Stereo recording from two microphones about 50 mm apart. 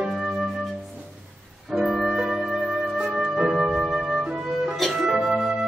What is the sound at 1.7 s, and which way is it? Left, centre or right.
Music, centre.